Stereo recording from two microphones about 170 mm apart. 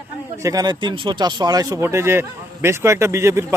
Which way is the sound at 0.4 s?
20° right (ahead or behind).